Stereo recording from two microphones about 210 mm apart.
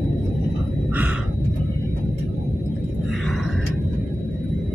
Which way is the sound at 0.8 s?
5° right (ahead or behind).